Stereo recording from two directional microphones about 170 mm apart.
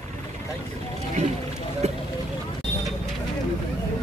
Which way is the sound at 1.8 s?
40° right (ahead or behind).